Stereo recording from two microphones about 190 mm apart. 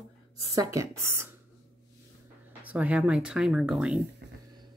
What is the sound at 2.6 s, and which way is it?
Speech, 5° right (ahead or behind).